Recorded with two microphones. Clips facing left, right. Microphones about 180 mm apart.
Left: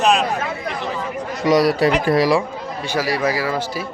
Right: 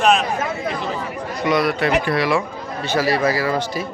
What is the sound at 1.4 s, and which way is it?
Speech, 35° left (ahead or behind).